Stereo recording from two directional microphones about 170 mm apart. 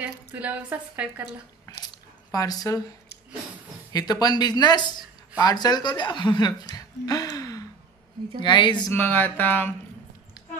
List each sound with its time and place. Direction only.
0.0 s a woman's voice: 10° right (ahead or behind)
2.3 s speech: 20° left (ahead or behind)
3.9 s speech: 25° left (ahead or behind)
6.7 s gasp: 20° left (ahead or behind)
8.4 s speech: 25° left (ahead or behind)
8.8 s a sound: 10° left (ahead or behind)